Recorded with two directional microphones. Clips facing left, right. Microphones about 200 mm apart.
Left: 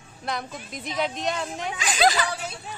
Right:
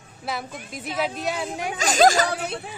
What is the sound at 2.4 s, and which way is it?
Speech, 60° right (ahead or behind).